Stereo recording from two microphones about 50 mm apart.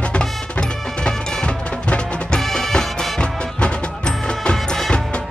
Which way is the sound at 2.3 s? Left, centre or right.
Centre.